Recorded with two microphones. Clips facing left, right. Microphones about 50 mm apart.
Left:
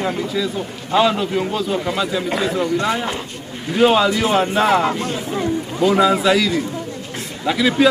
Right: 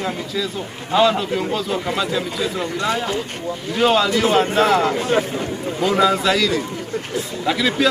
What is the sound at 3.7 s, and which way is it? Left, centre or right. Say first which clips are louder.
A man's voice: left 2 dB; centre.